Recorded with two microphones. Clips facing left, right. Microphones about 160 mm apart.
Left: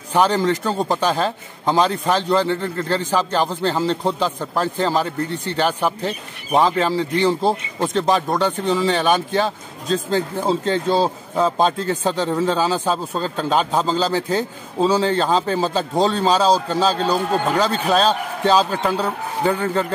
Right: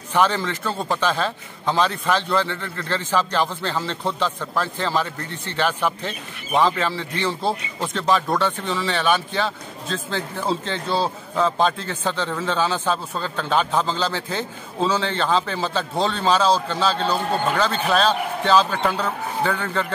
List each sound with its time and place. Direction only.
0.1 s a man's voice: 40° left (ahead or behind)
8.3 s speech: 15° left (ahead or behind)
8.5 s a man's voice: 40° left (ahead or behind)